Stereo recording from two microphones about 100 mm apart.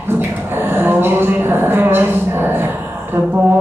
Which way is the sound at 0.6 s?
20° right (ahead or behind).